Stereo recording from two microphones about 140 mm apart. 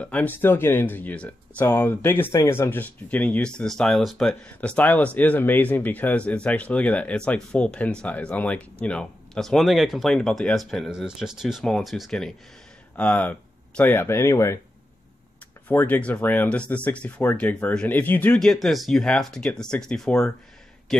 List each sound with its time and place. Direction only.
0.0 s speech: 10° left (ahead or behind)
15.7 s speech: 15° left (ahead or behind)